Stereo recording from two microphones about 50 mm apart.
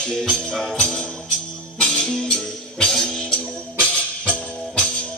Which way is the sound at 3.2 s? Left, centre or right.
Centre.